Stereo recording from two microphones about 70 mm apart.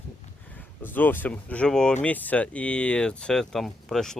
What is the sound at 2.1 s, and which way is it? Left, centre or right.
Speech, left.